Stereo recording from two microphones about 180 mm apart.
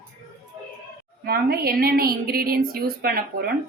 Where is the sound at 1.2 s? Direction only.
60° right (ahead or behind).